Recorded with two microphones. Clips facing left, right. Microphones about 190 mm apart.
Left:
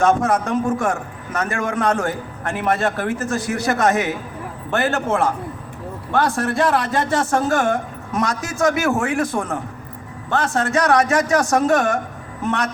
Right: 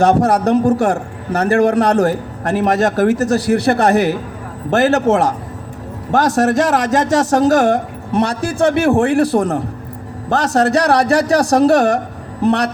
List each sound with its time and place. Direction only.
0.0 s a man's voice: 35° right (ahead or behind)